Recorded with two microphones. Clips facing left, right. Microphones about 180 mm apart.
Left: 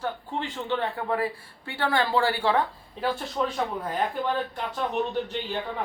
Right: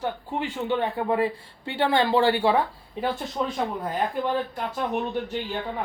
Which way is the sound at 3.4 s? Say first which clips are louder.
Even; 5° right (ahead or behind).